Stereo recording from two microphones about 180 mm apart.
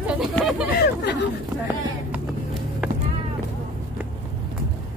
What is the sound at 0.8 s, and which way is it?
Speech, 70° left (ahead or behind).